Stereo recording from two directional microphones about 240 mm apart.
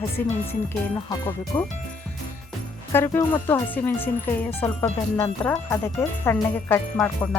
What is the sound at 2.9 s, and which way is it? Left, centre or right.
Speech, centre.